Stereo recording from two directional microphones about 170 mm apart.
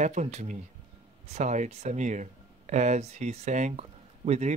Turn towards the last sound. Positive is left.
turn(degrees=-40)  # may be behind; listen again after turning